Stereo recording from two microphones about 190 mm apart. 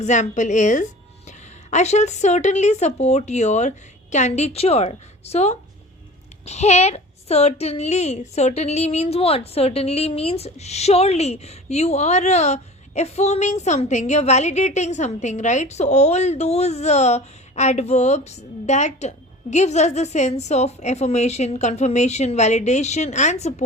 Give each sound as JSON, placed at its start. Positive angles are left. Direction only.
{"t": 0.0, "sound": "a woman's voice", "side_deg": 40}